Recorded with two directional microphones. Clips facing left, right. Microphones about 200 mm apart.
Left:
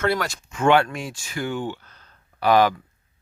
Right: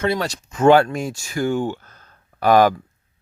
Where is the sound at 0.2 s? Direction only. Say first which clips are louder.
Right 5 dB; 35° right (ahead or behind).